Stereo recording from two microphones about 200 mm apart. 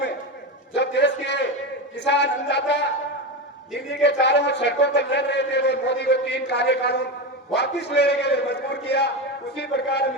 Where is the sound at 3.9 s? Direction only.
60° left (ahead or behind).